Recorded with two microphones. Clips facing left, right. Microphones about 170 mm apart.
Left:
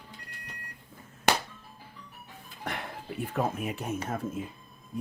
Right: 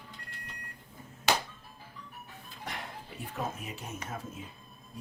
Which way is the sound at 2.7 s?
55° left (ahead or behind).